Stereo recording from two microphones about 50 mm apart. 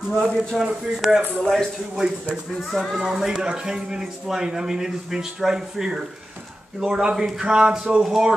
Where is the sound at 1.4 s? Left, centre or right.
Centre.